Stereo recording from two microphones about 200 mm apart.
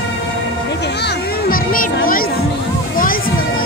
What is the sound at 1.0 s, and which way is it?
Music, 50° left (ahead or behind).